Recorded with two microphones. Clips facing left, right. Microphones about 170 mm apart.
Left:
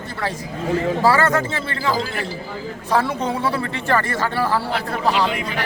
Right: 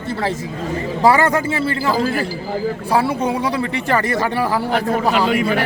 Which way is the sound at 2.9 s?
10° right (ahead or behind).